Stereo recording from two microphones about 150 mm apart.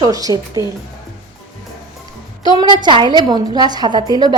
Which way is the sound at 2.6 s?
30° right (ahead or behind).